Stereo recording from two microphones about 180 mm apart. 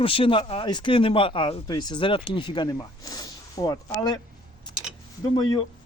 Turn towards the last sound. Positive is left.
turn(degrees=20)  # may be behind; listen again after turning